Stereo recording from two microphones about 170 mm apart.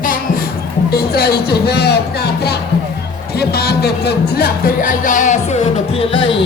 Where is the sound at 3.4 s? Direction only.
70° left (ahead or behind); by 5.6 s 45° left (ahead or behind).